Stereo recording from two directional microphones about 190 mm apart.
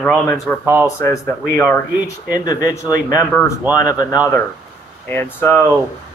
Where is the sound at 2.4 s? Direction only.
20° left (ahead or behind).